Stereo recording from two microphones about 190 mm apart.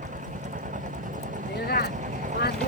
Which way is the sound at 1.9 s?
40° right (ahead or behind).